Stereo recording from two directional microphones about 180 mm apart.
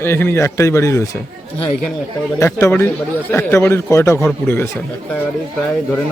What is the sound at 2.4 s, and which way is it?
Speech, 15° left (ahead or behind).